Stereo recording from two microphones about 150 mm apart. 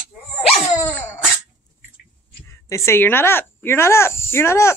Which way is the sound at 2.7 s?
15° left (ahead or behind).